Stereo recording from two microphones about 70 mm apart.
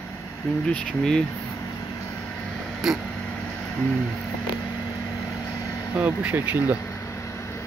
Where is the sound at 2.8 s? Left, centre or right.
Centre.